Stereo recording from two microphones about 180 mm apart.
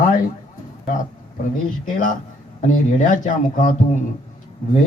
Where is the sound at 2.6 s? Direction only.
45° left (ahead or behind).